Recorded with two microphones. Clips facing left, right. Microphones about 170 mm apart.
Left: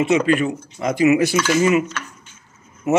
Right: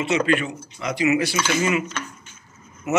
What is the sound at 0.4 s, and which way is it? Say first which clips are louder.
Speech: left 7 dB; 45° left (ahead or behind).